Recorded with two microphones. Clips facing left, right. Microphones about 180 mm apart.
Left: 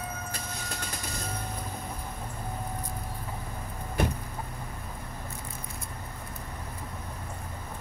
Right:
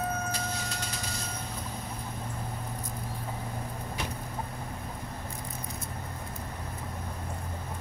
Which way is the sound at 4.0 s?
55° left (ahead or behind).